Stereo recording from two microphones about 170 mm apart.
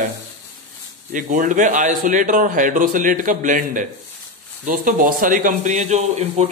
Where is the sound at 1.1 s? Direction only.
50° right (ahead or behind).